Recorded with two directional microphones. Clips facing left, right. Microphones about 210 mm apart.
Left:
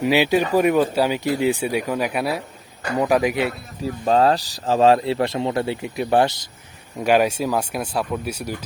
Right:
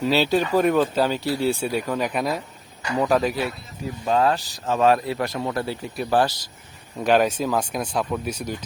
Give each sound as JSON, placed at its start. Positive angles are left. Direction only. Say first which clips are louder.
{"t": 0.0, "sound": "speech", "louder": "left 2 dB", "side_deg": 15}
{"t": 4.0, "sound": "speech", "louder": "left 3 dB", "side_deg": 35}
{"t": 7.0, "sound": "speech", "louder": "left 1 dB", "side_deg": 10}